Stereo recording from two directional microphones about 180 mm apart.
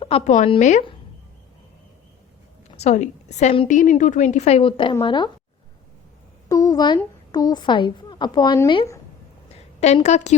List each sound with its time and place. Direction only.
0.3 s a woman's voice: 45° left (ahead or behind)
2.7 s a woman's voice: 40° left (ahead or behind)
3.7 s a woman's voice: 45° left (ahead or behind); by 5.3 s 25° left (ahead or behind)
6.5 s a woman's voice: 20° left (ahead or behind)
9.8 s a woman's voice: 40° left (ahead or behind)